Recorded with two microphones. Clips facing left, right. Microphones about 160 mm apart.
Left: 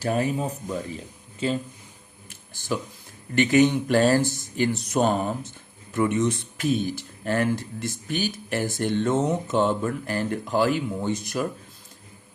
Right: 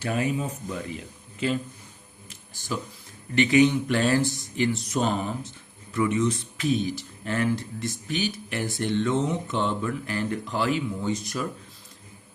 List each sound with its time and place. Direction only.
0.0 s speech: 40° left (ahead or behind)
3.3 s speech: 45° left (ahead or behind)